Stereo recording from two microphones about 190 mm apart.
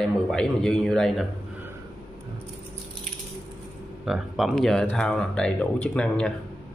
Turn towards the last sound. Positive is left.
turn(degrees=5)  # may be behind; listen again after turning